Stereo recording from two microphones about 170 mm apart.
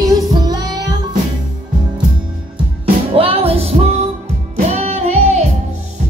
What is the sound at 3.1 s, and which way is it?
Music, 35° right (ahead or behind).